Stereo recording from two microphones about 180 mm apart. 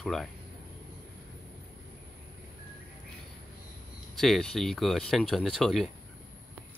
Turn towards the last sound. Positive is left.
turn(degrees=0)  # may be behind; listen again after turning